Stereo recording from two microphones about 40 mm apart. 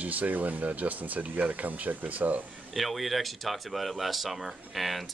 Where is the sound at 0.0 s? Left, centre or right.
Right.